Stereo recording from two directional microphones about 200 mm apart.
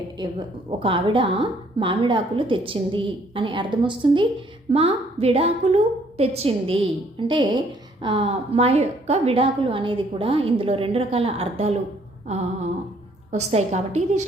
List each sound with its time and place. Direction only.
0.2 s a woman's voice: 25° right (ahead or behind)
13.3 s a woman's voice: 35° right (ahead or behind)